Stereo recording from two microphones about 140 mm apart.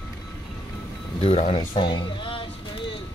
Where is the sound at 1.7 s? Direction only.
35° left (ahead or behind).